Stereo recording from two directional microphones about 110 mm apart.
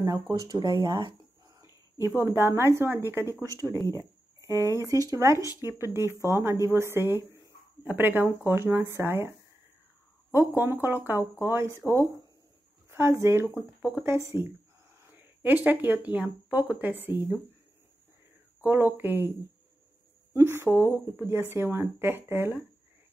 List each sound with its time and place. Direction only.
0.0 s speech: 35° right (ahead or behind)
2.0 s speech: 25° right (ahead or behind)
10.3 s speech: 20° right (ahead or behind)
12.9 s speech: 25° right (ahead or behind)
18.9 s speech: 20° right (ahead or behind)
20.3 s speech: 25° right (ahead or behind)